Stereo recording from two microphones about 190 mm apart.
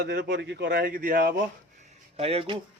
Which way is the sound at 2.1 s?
30° right (ahead or behind).